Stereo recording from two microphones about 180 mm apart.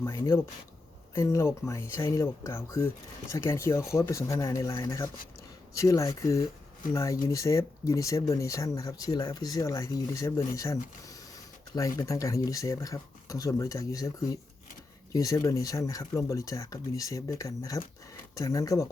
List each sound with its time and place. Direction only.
0.0 s speech: 15° left (ahead or behind)